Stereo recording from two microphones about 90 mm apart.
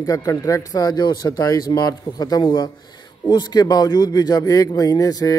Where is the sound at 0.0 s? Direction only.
40° left (ahead or behind).